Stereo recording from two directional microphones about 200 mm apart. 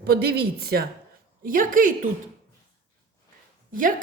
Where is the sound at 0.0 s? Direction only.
50° right (ahead or behind).